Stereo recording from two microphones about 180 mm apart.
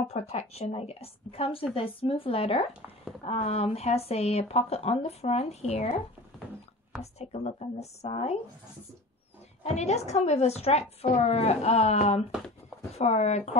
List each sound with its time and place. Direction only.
0.1 s speech: 35° left (ahead or behind)
7.0 s speech: 35° left (ahead or behind)
9.6 s speech: 35° left (ahead or behind)